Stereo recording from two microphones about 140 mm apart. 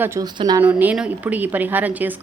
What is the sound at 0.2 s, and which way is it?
Speech, 30° right (ahead or behind).